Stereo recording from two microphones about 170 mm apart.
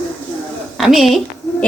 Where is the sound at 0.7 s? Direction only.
Centre (ahead or behind).